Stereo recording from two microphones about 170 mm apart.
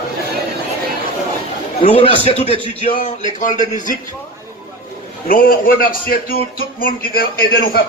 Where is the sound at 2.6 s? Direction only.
30° right (ahead or behind).